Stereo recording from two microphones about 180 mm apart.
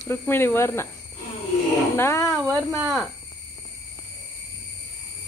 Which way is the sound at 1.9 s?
15° left (ahead or behind).